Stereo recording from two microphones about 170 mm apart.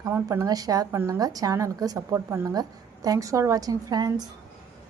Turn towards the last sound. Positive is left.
turn(degrees=-25)  # may be behind; listen again after turning